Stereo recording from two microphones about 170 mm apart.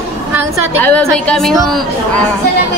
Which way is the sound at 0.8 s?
5° left (ahead or behind).